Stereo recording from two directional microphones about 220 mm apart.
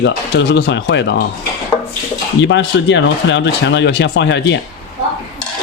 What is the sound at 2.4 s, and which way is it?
Speech, 55° left (ahead or behind).